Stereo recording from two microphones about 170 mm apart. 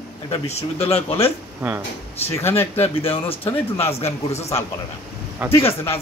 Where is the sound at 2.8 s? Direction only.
35° left (ahead or behind).